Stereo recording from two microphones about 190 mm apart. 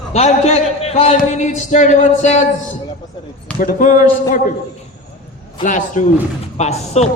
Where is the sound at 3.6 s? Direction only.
45° left (ahead or behind).